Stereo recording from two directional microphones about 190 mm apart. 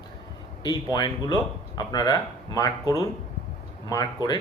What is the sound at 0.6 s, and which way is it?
Speech, 20° left (ahead or behind).